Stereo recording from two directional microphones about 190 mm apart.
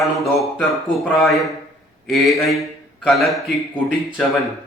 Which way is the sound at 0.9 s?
5° left (ahead or behind).